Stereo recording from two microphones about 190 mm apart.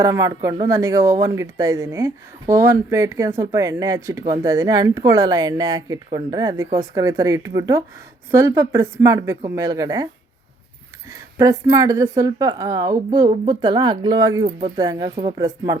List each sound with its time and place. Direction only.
0.0 s speech: 15° right (ahead or behind)
11.1 s speech: 15° right (ahead or behind)